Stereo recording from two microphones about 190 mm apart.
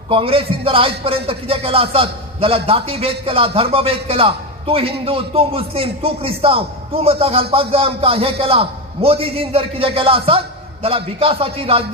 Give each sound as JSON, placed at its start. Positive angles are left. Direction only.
{"t": 0.1, "sound": "a man's voice", "side_deg": -30}